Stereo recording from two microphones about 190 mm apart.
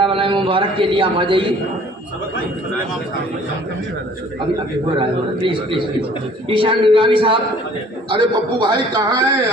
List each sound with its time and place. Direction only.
0.0 s a man's voice: 25° right (ahead or behind)
4.9 s a man's voice: 25° right (ahead or behind)